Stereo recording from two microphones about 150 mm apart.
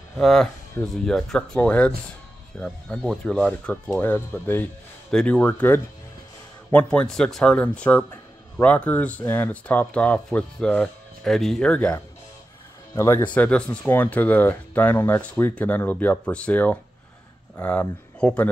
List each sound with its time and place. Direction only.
0.2 s a man's voice: 5° left (ahead or behind)
12.9 s a man's voice: 20° left (ahead or behind)